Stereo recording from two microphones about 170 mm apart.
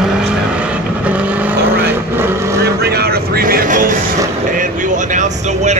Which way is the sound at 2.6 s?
70° right (ahead or behind).